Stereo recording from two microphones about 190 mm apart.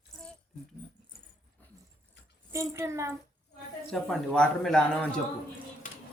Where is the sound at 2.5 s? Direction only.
15° right (ahead or behind).